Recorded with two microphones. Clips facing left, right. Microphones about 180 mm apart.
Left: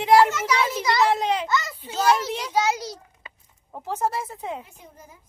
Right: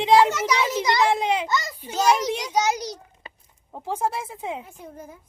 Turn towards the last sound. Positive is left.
turn(degrees=-55)  # may be behind; listen again after turning